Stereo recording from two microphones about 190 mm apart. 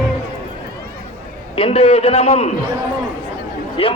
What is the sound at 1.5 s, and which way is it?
Speech, 30° left (ahead or behind).